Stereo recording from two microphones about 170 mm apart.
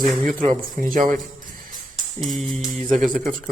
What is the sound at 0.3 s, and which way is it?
Speech, 50° right (ahead or behind).